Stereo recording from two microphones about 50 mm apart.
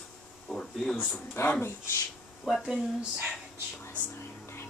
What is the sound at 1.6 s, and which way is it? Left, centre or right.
Speech, left.